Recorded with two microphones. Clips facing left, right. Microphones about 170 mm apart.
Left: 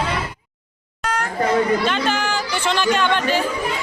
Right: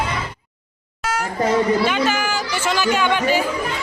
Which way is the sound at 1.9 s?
5° right (ahead or behind).